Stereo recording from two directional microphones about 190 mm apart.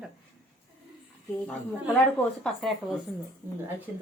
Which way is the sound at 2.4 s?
Centre (ahead or behind).